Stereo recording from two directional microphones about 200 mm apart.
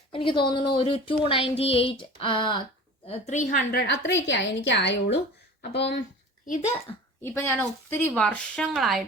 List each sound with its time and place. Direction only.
0.1 s a sound: 25° left (ahead or behind)
3.1 s a woman's voice: 35° left (ahead or behind); by 5.9 s 55° left (ahead or behind)
7.2 s a woman's voice: 10° left (ahead or behind)